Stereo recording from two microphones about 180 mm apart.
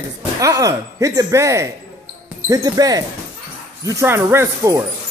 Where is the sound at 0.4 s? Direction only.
20° right (ahead or behind).